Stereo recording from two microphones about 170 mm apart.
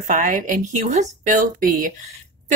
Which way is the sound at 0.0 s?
50° right (ahead or behind).